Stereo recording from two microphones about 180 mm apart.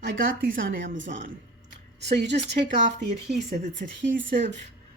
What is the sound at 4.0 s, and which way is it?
Speech, 90° right.